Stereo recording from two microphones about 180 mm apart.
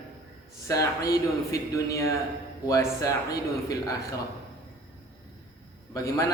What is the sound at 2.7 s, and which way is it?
Speech, 15° left (ahead or behind).